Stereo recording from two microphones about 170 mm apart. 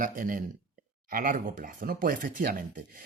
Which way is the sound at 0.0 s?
55° right (ahead or behind).